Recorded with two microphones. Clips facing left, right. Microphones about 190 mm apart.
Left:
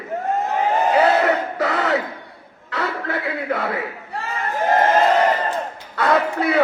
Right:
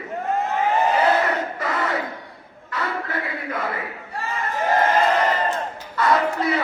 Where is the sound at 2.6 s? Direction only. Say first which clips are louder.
Left 3 dB; 70° left (ahead or behind).